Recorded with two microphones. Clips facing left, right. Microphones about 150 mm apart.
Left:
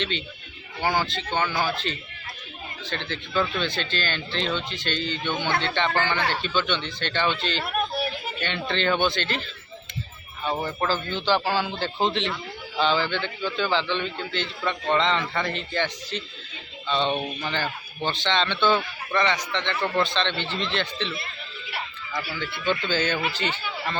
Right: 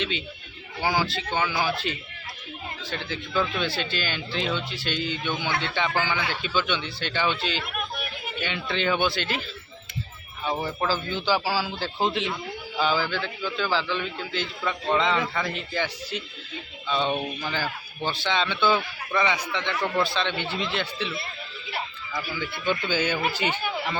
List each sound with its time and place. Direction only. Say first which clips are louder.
0.8 s speech: even; 5° right (ahead or behind)
7.6 s a sound: left 6 dB; 35° left (ahead or behind)
8.4 s speech: even; 5° right (ahead or behind)
10.4 s a man's voice: left 1 dB; 10° right (ahead or behind)
22.2 s speech: even; 15° right (ahead or behind)